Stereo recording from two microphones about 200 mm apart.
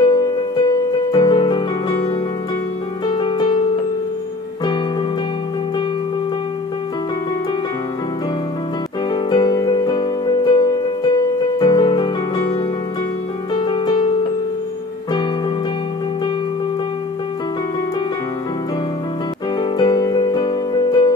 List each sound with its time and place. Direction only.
0.0 s music: 20° left (ahead or behind)
3.1 s music: 25° left (ahead or behind)
9.1 s music: 20° left (ahead or behind)
13.6 s music: 25° left (ahead or behind)
19.6 s music: 20° left (ahead or behind)